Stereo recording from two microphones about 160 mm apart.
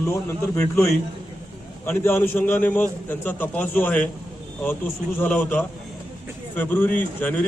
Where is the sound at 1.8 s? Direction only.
15° left (ahead or behind).